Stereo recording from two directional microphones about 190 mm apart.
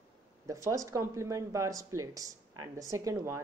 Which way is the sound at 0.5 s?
15° right (ahead or behind).